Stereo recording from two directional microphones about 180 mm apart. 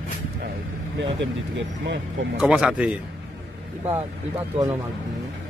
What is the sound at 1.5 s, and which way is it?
Speech, 90° right.